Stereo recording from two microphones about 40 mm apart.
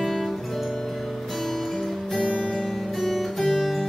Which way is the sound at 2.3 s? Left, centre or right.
Left.